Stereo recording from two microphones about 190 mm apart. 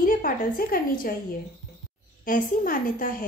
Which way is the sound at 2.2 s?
45° left (ahead or behind).